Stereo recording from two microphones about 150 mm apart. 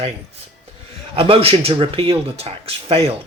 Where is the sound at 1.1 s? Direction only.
35° right (ahead or behind).